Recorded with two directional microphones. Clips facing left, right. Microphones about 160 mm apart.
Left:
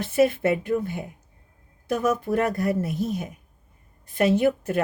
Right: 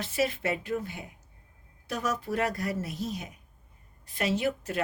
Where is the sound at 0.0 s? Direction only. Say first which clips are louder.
Left 9 dB; 55° left (ahead or behind).